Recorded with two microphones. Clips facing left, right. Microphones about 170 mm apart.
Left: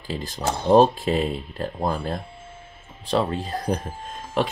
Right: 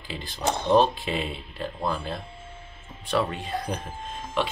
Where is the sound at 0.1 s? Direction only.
40° left (ahead or behind).